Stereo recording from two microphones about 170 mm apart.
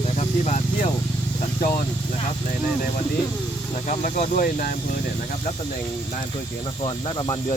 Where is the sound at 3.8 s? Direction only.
45° left (ahead or behind).